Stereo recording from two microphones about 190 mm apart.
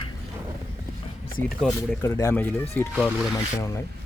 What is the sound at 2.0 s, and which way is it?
Speech, 15° left (ahead or behind).